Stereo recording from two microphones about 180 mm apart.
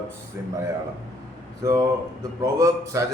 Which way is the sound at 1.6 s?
20° right (ahead or behind).